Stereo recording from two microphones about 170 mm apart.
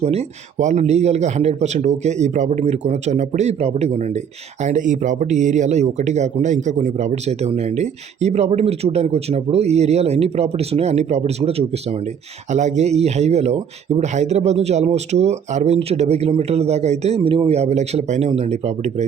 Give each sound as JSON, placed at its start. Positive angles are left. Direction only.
{"t": 0.0, "sound": "speech", "side_deg": -40}